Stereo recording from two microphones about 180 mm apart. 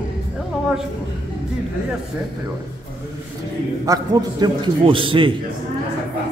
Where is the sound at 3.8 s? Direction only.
20° right (ahead or behind).